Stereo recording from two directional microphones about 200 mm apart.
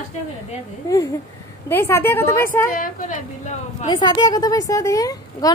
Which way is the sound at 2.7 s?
40° left (ahead or behind).